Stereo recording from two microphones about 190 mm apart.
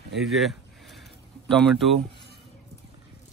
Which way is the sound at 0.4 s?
Centre (ahead or behind).